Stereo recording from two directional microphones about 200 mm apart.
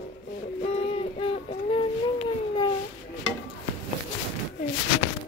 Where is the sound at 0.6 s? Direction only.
30° left (ahead or behind).